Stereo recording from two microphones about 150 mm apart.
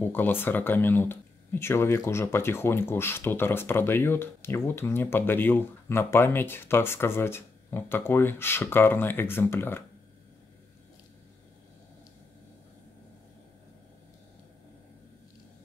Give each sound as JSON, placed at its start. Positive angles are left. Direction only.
{"t": 0.0, "sound": "speech", "side_deg": 15}